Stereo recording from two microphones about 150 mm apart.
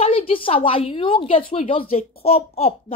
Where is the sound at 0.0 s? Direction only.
40° left (ahead or behind).